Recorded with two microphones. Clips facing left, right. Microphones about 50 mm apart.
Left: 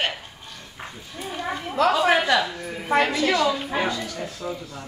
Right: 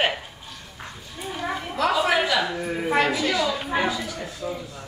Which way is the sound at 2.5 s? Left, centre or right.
Right.